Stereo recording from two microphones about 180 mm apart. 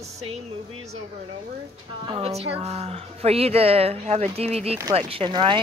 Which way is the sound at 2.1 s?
35° right (ahead or behind).